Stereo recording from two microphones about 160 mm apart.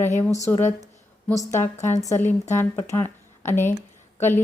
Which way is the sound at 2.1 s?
15° left (ahead or behind).